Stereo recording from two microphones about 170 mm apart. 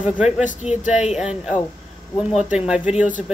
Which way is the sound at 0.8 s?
45° left (ahead or behind).